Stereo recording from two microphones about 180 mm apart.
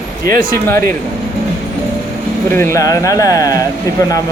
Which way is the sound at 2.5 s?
15° left (ahead or behind).